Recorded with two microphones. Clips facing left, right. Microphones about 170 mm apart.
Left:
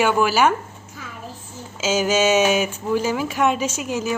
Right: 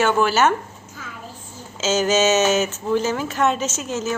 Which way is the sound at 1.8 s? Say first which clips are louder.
Right 1 dB; 10° left (ahead or behind).